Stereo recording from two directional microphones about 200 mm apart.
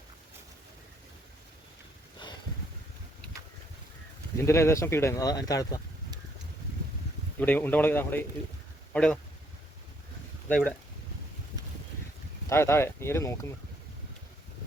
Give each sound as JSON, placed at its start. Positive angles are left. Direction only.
{"t": 2.2, "sound": "a sound", "side_deg": 25}
{"t": 4.4, "sound": "speech", "side_deg": 15}
{"t": 7.3, "sound": "speech", "side_deg": 10}
{"t": 10.5, "sound": "speech", "side_deg": 5}
{"t": 12.5, "sound": "speech", "side_deg": 15}